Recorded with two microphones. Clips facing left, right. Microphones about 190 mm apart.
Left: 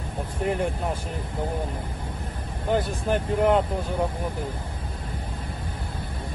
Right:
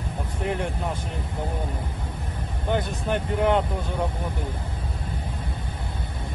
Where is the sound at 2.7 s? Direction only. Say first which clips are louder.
Left 2 dB; 5° left (ahead or behind).